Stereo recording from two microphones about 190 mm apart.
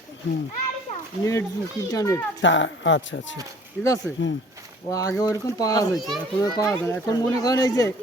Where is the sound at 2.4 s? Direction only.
75° left (ahead or behind).